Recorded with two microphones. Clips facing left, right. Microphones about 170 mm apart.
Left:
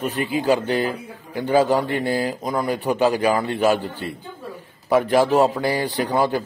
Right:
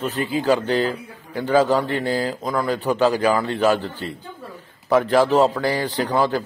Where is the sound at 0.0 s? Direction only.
15° left (ahead or behind).